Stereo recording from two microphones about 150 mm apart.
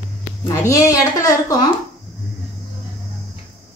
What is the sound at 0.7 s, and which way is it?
Speech, 25° left (ahead or behind).